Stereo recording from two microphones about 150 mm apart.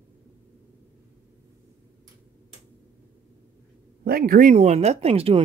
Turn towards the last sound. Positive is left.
turn(degrees=-40)  # may be behind; listen again after turning